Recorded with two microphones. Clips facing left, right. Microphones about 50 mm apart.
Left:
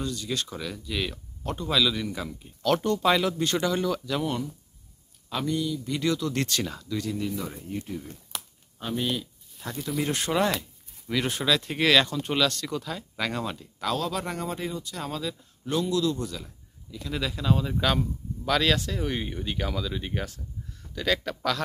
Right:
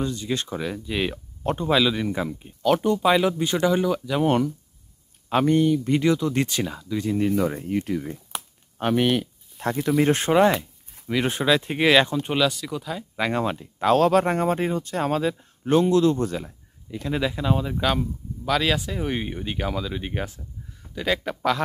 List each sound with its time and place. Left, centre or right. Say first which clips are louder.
0.0 s speech: right 4 dB; right
2.7 s speech: right 3 dB; centre
5.3 s speech: right 9 dB; right
5.9 s speech: right 6 dB; right
7.0 s speech: right 7 dB; right
7.2 s speech: right 10 dB; right
8.3 s a sound: right 4 dB; centre
8.7 s a sound: right 8 dB; right
10.0 s speech: right 7 dB; right; by 13.2 s centre
13.2 s speech: right 7 dB; right
13.9 s speech: right 13 dB; right
17.2 s speech: right 2 dB; right